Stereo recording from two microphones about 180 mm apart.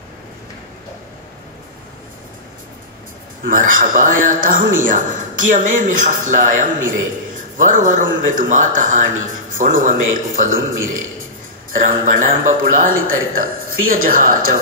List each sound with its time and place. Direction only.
3.4 s a man's voice: 50° right (ahead or behind)
12.0 s a man's voice: 50° right (ahead or behind)